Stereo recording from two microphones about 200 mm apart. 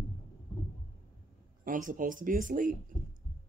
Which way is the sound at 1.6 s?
40° right (ahead or behind).